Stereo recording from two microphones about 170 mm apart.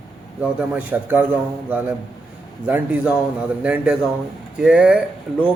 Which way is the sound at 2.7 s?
10° right (ahead or behind).